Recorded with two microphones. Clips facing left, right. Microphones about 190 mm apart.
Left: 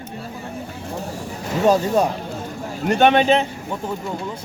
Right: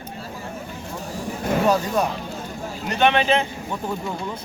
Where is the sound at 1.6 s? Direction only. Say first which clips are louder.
Left 6 dB; 30° left (ahead or behind).